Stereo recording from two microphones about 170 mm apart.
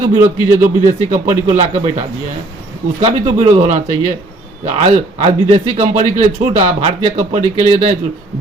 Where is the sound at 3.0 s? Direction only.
40° right (ahead or behind).